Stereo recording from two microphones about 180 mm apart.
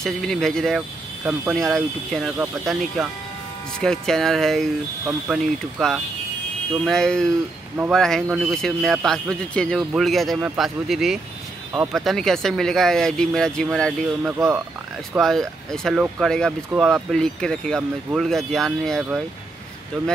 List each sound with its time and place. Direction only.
0.0 s speech: 5° left (ahead or behind)